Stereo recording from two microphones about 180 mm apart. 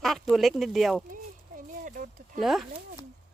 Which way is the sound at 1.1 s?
50° right (ahead or behind).